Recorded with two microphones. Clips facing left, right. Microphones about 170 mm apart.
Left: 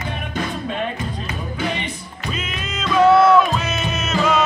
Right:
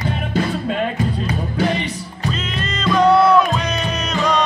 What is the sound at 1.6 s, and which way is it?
Music, 35° right (ahead or behind).